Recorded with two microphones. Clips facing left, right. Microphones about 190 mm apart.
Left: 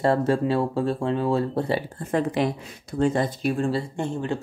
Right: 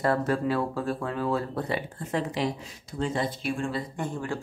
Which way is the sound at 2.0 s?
50° left (ahead or behind).